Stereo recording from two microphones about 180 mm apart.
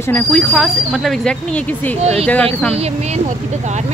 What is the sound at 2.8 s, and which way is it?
Speech, 35° right (ahead or behind).